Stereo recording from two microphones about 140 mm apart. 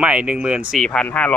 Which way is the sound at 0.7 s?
5° left (ahead or behind).